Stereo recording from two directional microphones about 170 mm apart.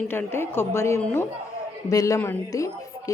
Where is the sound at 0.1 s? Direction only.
15° left (ahead or behind).